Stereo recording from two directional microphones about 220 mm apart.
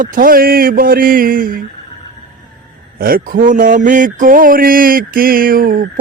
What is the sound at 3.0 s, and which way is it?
Mantra, 40° right (ahead or behind).